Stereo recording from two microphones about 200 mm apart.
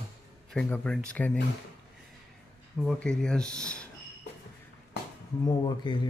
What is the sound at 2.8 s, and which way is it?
Speech, centre (ahead or behind).